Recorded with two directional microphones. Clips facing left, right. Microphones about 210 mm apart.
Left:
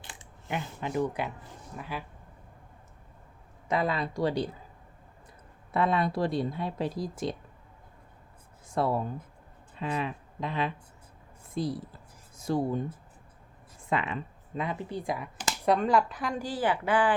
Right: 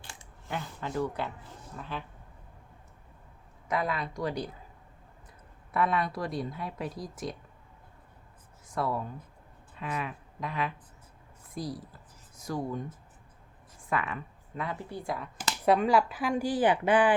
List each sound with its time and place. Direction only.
0.0 s camera: 20° left (ahead or behind)
1.7 s speech: 10° left (ahead or behind)
3.7 s speech: 25° left (ahead or behind)
5.7 s speech: 25° left (ahead or behind)
8.7 s speech: 30° left (ahead or behind)
13.9 s speech: 20° left (ahead or behind)
15.6 s speech: 5° right (ahead or behind)